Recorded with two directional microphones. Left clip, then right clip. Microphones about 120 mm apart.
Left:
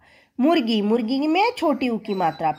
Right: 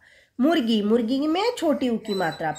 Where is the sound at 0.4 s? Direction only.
20° left (ahead or behind).